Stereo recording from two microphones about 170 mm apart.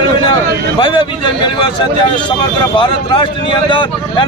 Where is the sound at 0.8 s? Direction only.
30° left (ahead or behind).